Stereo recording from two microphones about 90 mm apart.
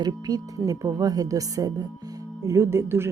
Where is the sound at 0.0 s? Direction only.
45° right (ahead or behind).